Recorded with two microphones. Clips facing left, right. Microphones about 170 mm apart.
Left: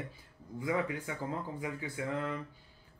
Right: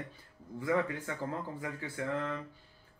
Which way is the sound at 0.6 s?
15° left (ahead or behind).